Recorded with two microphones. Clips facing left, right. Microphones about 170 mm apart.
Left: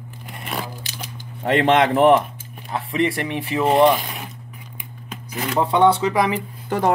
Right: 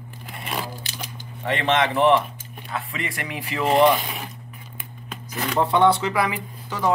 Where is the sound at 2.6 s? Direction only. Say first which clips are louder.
Left 9 dB; 30° left (ahead or behind).